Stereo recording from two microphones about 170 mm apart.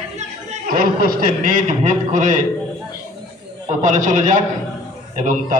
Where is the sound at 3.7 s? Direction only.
50° right (ahead or behind).